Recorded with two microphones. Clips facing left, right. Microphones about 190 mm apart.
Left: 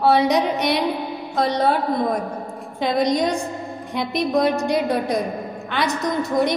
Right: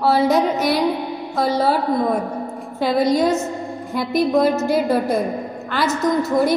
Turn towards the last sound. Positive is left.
turn(degrees=0)  # may be behind; listen again after turning